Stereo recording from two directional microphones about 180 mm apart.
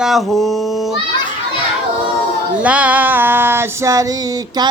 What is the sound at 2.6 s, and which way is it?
Female singing, 5° right (ahead or behind).